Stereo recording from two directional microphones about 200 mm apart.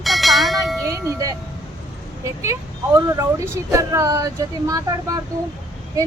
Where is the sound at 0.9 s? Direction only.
15° right (ahead or behind).